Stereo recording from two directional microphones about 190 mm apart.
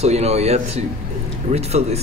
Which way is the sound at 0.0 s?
35° right (ahead or behind).